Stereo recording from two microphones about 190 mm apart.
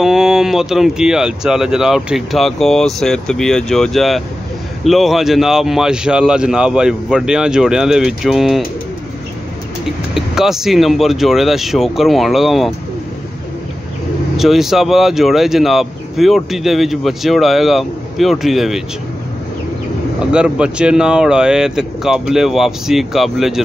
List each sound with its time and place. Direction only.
0.0 s speech: centre (ahead or behind)
9.8 s speech: centre (ahead or behind)
14.3 s speech: centre (ahead or behind)
20.2 s speech: 5° right (ahead or behind)